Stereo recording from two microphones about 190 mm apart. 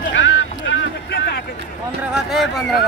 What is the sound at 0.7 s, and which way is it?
Boat, 65° left (ahead or behind).